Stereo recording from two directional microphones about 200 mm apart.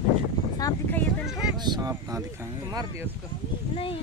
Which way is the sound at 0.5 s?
20° left (ahead or behind).